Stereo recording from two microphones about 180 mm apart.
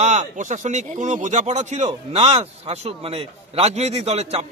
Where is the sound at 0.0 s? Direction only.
40° right (ahead or behind).